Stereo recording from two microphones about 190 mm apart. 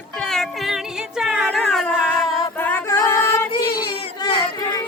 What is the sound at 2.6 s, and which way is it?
Music, 10° left (ahead or behind).